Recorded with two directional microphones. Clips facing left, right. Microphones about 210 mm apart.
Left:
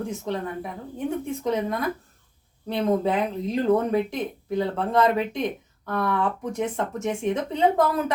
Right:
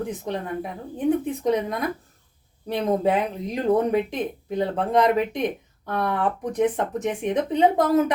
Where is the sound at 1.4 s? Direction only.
15° right (ahead or behind).